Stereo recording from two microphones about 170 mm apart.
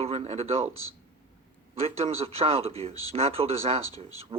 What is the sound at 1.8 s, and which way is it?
Speech, 35° right (ahead or behind).